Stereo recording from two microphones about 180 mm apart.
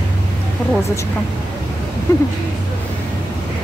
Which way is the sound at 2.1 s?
15° left (ahead or behind).